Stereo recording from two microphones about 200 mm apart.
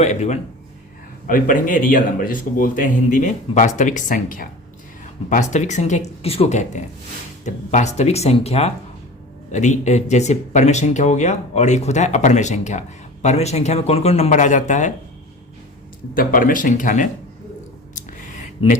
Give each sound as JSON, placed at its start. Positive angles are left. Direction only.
{"t": 0.0, "sound": "speech", "side_deg": 35}
{"t": 16.1, "sound": "speech", "side_deg": 45}